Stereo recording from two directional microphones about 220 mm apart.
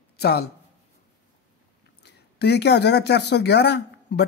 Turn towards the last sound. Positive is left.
turn(degrees=50)  # may be behind; listen again after turning